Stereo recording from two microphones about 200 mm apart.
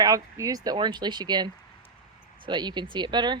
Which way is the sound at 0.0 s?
15° right (ahead or behind).